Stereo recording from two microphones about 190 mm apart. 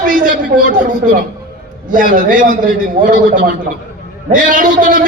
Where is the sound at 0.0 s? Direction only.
45° right (ahead or behind).